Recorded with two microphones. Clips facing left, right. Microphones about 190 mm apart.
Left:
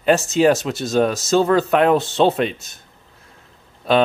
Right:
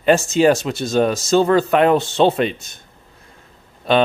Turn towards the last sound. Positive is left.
turn(degrees=0)  # may be behind; listen again after turning